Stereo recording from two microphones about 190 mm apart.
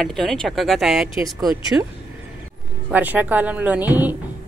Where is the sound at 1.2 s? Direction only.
15° right (ahead or behind).